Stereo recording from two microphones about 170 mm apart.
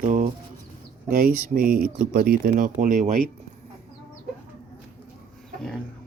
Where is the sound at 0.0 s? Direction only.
50° right (ahead or behind).